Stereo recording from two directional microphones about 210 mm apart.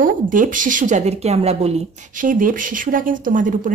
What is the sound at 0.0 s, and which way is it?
Speech, 40° right (ahead or behind).